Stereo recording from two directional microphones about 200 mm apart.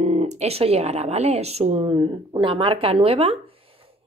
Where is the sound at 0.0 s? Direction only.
35° right (ahead or behind).